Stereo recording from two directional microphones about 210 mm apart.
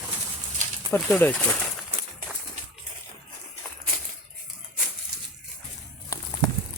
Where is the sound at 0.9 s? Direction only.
5° left (ahead or behind).